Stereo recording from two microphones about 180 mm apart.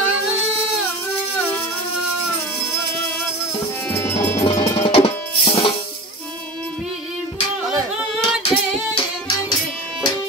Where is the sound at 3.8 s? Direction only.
10° left (ahead or behind).